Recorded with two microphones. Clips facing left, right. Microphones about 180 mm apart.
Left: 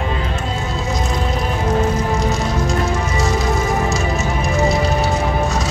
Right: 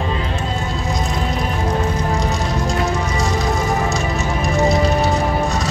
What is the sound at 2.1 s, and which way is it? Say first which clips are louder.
Music: left 1 dB; centre (ahead or behind).